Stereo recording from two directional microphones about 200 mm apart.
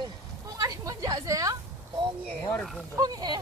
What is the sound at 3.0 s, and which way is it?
Speech, 20° right (ahead or behind).